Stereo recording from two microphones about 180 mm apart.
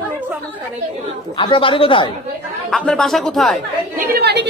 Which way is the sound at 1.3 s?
25° left (ahead or behind).